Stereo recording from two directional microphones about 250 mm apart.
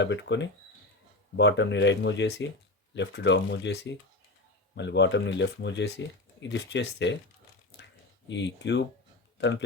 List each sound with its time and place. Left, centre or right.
0.0 s speech: left
8.3 s speech: left